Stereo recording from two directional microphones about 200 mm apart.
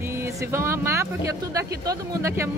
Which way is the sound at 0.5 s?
15° right (ahead or behind).